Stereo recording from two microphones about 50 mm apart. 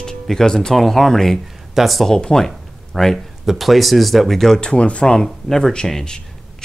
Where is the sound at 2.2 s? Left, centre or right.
Centre.